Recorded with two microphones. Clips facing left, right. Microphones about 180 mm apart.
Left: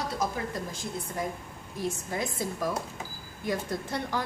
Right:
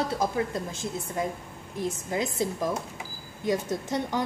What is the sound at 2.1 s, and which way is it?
Speech, 20° right (ahead or behind).